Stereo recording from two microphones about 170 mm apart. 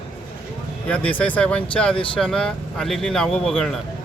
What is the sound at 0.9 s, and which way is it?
Speech, 10° left (ahead or behind).